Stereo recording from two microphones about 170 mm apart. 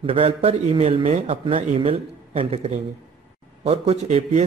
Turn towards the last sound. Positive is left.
turn(degrees=-40)  # may be behind; listen again after turning